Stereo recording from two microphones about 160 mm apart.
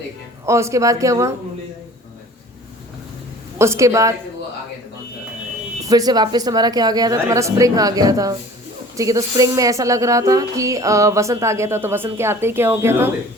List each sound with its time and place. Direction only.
0.4 s speech: 20° right (ahead or behind)
3.6 s speech: 15° right (ahead or behind)
5.8 s speech: 25° right (ahead or behind)